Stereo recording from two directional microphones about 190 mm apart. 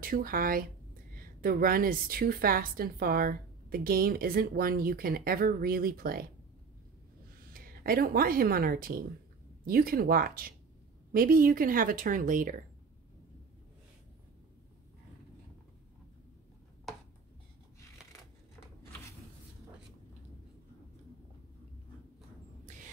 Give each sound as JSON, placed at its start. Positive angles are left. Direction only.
{"t": 0.0, "sound": "a woman's voice", "side_deg": -50}
{"t": 7.5, "sound": "a woman's voice", "side_deg": -50}